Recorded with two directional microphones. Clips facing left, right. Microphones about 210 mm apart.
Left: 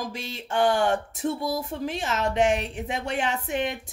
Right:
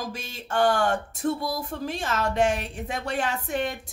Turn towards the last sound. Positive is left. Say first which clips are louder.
# left 1 dB
turn(degrees=20)  # may be behind; listen again after turning